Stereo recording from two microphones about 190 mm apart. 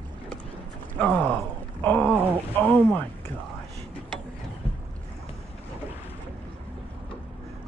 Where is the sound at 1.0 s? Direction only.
5° left (ahead or behind).